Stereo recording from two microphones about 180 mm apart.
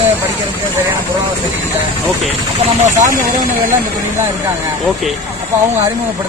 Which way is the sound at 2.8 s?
45° right (ahead or behind).